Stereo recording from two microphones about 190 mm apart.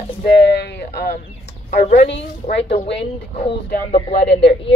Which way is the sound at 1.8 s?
35° left (ahead or behind).